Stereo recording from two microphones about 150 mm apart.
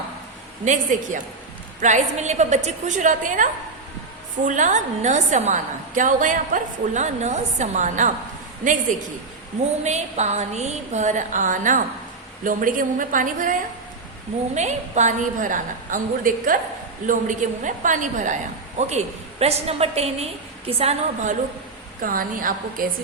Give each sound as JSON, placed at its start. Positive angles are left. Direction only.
{"t": 0.6, "sound": "a woman's voice", "side_deg": -55}
{"t": 9.8, "sound": "a woman's voice", "side_deg": -50}
{"t": 14.5, "sound": "a woman's voice", "side_deg": -50}
{"t": 22.0, "sound": "a woman's voice", "side_deg": -65}